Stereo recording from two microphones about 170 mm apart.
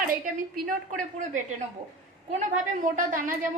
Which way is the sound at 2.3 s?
45° right (ahead or behind).